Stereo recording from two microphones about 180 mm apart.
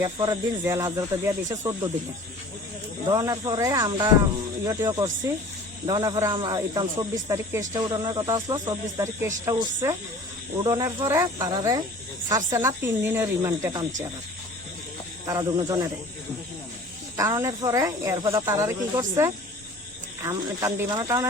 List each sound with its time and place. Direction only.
0.0 s speech: 20° right (ahead or behind)
3.1 s speech: 20° right (ahead or behind)
10.6 s speech: 20° right (ahead or behind)
15.3 s speech: 20° right (ahead or behind)
17.2 s speech: 15° right (ahead or behind)